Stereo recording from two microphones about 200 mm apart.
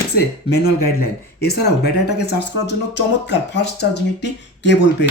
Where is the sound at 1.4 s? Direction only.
55° left (ahead or behind).